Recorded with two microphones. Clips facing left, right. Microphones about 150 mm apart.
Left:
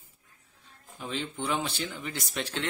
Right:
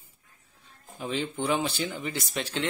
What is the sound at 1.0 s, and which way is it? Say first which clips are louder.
Speech: right 4 dB; 5° right (ahead or behind).